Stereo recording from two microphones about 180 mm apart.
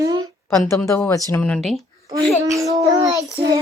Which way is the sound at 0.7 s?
15° left (ahead or behind).